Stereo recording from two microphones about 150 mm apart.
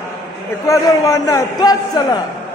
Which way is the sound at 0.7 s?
25° left (ahead or behind).